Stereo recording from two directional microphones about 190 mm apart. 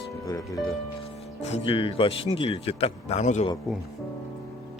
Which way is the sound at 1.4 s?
35° left (ahead or behind).